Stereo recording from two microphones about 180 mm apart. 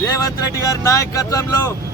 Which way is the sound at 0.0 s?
20° left (ahead or behind).